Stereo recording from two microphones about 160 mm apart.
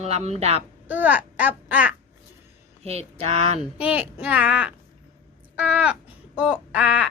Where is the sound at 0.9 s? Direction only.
10° right (ahead or behind).